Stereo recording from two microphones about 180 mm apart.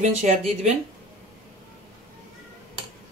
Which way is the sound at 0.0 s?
40° right (ahead or behind).